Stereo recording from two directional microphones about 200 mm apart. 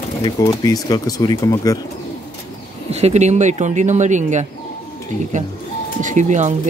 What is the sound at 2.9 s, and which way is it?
Speech, 35° right (ahead or behind).